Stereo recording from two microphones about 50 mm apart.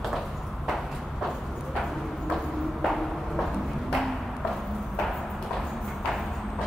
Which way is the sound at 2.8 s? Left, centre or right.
Centre.